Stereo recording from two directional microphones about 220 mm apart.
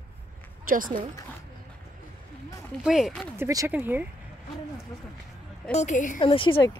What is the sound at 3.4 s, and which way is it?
Speech, 15° right (ahead or behind).